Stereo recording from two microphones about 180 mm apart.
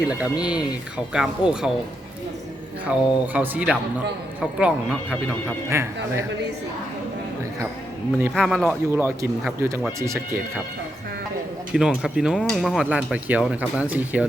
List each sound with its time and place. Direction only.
0.0 s speech: 5° right (ahead or behind)
2.9 s speech: 5° right (ahead or behind)
8.4 s speech: 5° left (ahead or behind)
8.6 s speech: 10° right (ahead or behind)
11.7 s speech: 5° right (ahead or behind)